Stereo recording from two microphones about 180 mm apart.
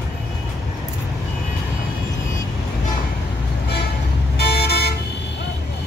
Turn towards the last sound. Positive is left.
turn(degrees=65)  # may be behind; listen again after turning